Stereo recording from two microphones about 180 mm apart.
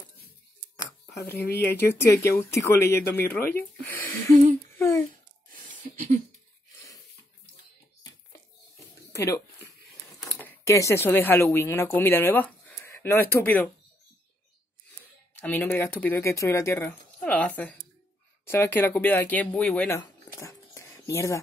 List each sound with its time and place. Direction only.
1.2 s speech: 60° left (ahead or behind)
1.5 s a woman's voice: 10° left (ahead or behind)
3.2 s speech: 55° left (ahead or behind)
4.3 s humming: 45° right (ahead or behind)
4.7 s speech: 15° left (ahead or behind)
5.5 s a sound: 45° right (ahead or behind)
9.1 s a sound: 15° left (ahead or behind)
10.4 s speech: 15° left (ahead or behind)
15.4 s a woman's voice: 10° left (ahead or behind)
20.0 s a sound: 15° left (ahead or behind)